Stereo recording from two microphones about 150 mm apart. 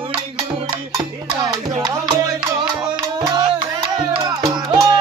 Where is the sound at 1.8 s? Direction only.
25° right (ahead or behind).